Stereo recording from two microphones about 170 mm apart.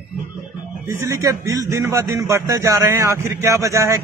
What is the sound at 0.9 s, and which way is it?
A man's voice, 15° right (ahead or behind).